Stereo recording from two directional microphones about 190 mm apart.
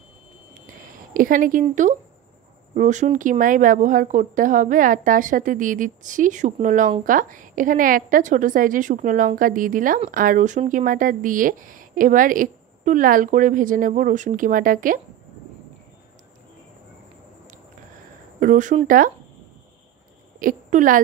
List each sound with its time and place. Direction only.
1.1 s speech: 45° right (ahead or behind)
18.4 s speech: 45° right (ahead or behind)
20.3 s a woman's voice: 45° right (ahead or behind)